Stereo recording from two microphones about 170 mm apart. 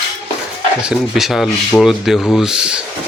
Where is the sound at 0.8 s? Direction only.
5° right (ahead or behind).